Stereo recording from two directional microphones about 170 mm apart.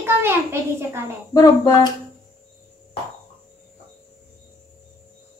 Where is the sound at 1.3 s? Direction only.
20° left (ahead or behind).